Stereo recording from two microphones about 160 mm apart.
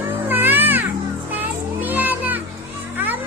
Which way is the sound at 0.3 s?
10° right (ahead or behind).